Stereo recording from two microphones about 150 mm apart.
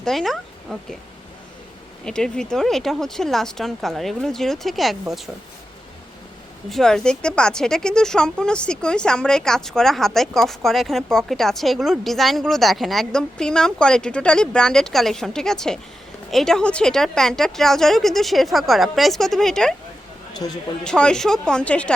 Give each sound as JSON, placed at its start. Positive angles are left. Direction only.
{"t": 0.0, "sound": "speech", "side_deg": 0}
{"t": 2.0, "sound": "speech", "side_deg": 5}
{"t": 6.7, "sound": "speech", "side_deg": 0}
{"t": 20.4, "sound": "a man's voice", "side_deg": 30}
{"t": 20.8, "sound": "speech", "side_deg": 5}